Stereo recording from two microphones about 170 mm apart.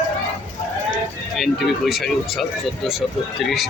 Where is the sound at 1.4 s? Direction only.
Centre (ahead or behind).